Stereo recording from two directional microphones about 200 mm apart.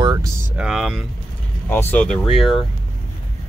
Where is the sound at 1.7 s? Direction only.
10° left (ahead or behind).